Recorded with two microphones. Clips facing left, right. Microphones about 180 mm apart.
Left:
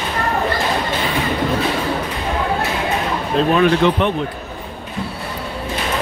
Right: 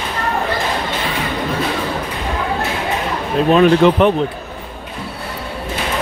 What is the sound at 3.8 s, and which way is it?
Speech, 40° right (ahead or behind).